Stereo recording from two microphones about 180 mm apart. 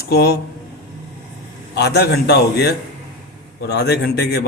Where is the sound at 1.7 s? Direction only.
65° left (ahead or behind).